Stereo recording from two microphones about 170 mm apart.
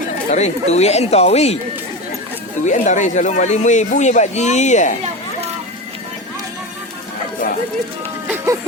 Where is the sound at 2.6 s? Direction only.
45° left (ahead or behind).